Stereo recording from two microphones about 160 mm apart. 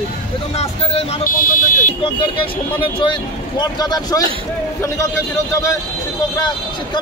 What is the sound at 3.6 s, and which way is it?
Speech, 25° left (ahead or behind).